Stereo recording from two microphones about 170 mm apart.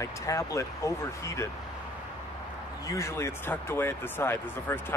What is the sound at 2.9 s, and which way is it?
Speech, 15° left (ahead or behind).